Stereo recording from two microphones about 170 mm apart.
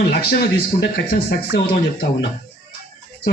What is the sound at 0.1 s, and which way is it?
A man's voice, 65° left (ahead or behind).